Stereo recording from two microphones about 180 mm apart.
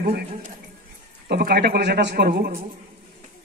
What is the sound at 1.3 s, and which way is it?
A man's voice, 60° right (ahead or behind).